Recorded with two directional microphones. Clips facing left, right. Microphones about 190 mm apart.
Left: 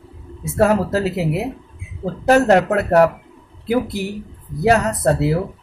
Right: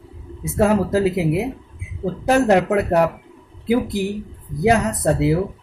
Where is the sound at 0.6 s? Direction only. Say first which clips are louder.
Even; 15° right (ahead or behind).